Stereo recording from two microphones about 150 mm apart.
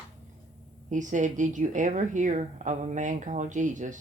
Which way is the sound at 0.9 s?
55° right (ahead or behind).